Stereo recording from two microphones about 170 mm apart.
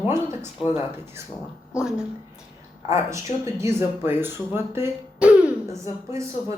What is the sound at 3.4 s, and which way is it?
A woman's voice, 15° right (ahead or behind).